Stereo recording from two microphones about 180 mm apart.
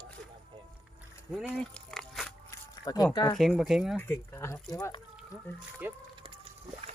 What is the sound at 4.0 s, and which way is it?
Speech, 15° left (ahead or behind).